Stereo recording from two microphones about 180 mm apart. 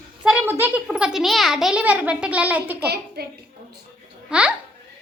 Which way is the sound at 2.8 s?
65° right (ahead or behind).